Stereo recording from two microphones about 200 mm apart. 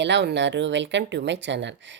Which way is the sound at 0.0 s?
60° right (ahead or behind).